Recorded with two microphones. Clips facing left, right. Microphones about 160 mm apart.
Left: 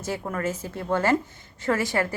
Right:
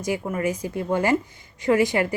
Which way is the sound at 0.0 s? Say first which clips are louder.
Right 4 dB; 15° right (ahead or behind).